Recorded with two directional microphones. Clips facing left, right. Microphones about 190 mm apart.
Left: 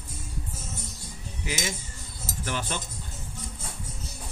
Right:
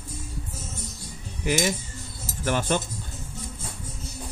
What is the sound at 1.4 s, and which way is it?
Cutlery, 50° right (ahead or behind).